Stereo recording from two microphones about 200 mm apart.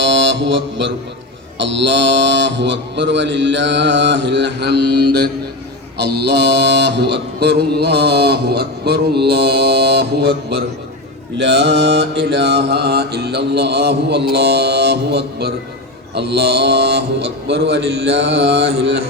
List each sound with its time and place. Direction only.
0.0 s mantra: 65° right (ahead or behind)